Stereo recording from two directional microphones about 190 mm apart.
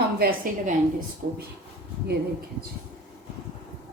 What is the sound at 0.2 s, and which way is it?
Speech, 50° right (ahead or behind).